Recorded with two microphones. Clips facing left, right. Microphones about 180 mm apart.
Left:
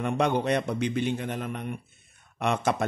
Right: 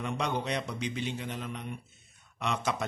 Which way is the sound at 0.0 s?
55° left (ahead or behind).